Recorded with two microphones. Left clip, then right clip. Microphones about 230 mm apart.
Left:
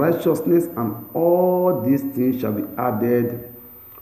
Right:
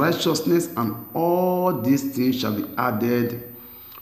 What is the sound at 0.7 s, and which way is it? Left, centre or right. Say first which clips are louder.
A man's voice: left 1 dB; right.